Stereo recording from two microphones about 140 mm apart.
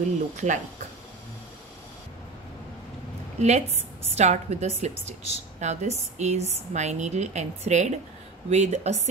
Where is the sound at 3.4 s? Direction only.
50° right (ahead or behind).